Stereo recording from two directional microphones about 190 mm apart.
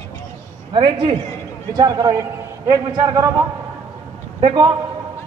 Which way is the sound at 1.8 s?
20° right (ahead or behind).